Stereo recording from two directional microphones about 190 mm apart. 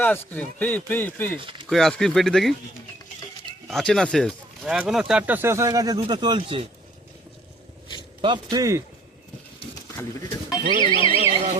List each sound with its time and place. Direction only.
0.0 s speech: 10° left (ahead or behind)
3.7 s speech: centre (ahead or behind); by 6.7 s 25° right (ahead or behind)
8.2 s a man's voice: 25° right (ahead or behind)
10.8 s speech: 25° left (ahead or behind)